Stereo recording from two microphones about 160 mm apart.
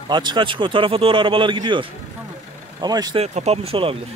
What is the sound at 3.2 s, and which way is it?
Speech, 40° right (ahead or behind).